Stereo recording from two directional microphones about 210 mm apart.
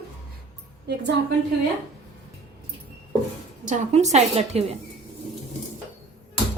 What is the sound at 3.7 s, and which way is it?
A woman's voice, 35° right (ahead or behind).